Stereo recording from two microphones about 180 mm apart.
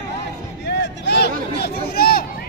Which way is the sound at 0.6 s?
70° left (ahead or behind).